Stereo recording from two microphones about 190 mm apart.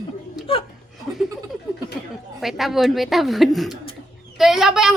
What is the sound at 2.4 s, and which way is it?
A woman's voice, centre (ahead or behind).